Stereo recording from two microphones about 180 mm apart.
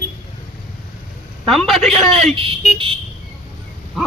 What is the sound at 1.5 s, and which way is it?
Speech, centre (ahead or behind).